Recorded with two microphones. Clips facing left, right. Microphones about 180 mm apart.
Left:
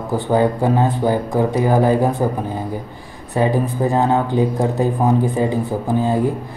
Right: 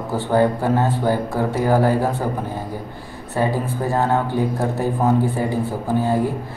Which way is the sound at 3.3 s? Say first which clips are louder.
Left 4 dB; 15° left (ahead or behind).